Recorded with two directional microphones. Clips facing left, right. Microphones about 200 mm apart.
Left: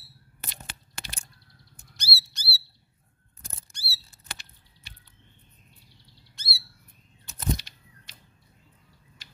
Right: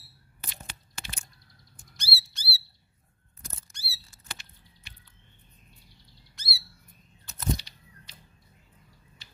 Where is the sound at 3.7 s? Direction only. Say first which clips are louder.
Left 3 dB; 35° left (ahead or behind).